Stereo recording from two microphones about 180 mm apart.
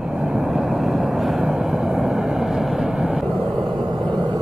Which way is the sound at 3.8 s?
25° right (ahead or behind).